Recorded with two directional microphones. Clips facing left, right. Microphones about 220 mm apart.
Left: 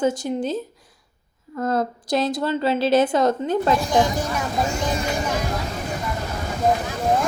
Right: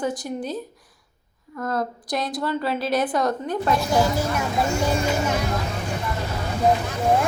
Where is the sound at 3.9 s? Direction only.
10° right (ahead or behind).